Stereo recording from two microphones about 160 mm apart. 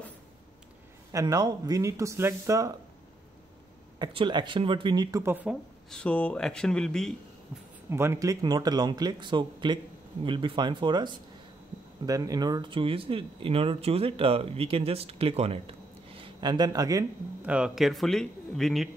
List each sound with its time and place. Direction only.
1.1 s speech: 25° right (ahead or behind)
4.0 s speech: 25° right (ahead or behind)
5.3 s speech: 10° right (ahead or behind)
5.9 s speech: 5° left (ahead or behind)
7.9 s speech: 15° right (ahead or behind)
17.4 s speech: 5° right (ahead or behind)